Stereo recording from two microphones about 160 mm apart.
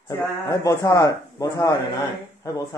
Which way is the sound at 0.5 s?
20° left (ahead or behind).